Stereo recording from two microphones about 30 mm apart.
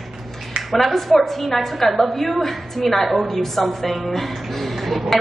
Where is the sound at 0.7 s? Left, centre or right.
Centre.